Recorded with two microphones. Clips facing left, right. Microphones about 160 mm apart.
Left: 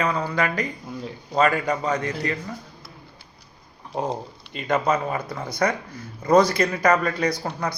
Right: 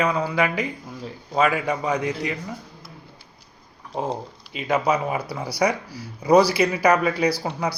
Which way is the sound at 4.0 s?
5° right (ahead or behind).